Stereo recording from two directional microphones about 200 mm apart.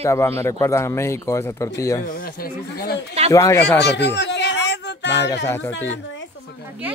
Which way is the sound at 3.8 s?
55° left (ahead or behind).